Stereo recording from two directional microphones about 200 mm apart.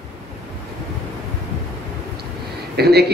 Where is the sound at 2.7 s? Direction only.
55° right (ahead or behind).